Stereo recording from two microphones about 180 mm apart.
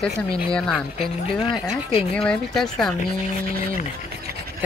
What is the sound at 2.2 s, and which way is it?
Speech, 5° left (ahead or behind).